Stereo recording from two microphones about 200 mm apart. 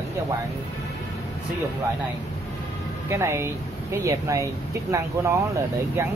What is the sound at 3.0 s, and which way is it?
Speech, 15° right (ahead or behind).